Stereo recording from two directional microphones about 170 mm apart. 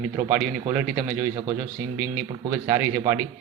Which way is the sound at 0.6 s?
15° right (ahead or behind).